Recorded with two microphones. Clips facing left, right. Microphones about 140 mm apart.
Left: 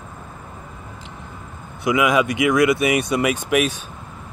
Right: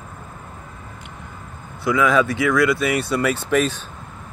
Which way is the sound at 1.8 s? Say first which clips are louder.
Even; 15° left (ahead or behind).